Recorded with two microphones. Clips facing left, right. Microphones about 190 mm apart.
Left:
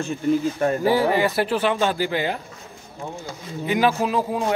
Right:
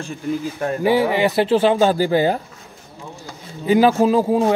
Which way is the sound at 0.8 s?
20° right (ahead or behind).